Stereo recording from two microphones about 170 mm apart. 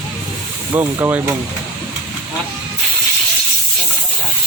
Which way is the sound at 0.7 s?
15° right (ahead or behind).